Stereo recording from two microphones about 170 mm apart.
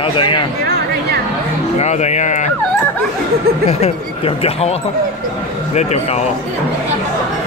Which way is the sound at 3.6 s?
35° left (ahead or behind).